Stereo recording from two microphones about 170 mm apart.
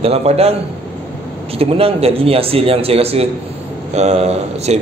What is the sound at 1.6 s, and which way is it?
A man's voice, 35° right (ahead or behind).